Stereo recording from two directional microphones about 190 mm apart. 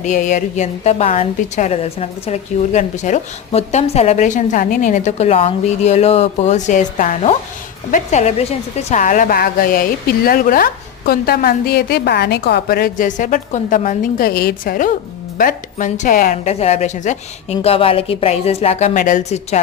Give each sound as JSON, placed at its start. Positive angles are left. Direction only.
{"t": 0.0, "sound": "a woman's voice", "side_deg": 40}